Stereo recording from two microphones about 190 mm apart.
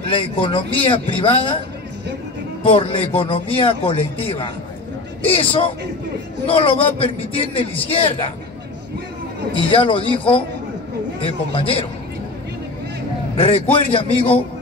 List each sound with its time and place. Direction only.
0.1 s speech: 25° left (ahead or behind)
2.6 s speech: 25° left (ahead or behind)
9.5 s speech: 30° left (ahead or behind)
13.4 s speech: 30° left (ahead or behind)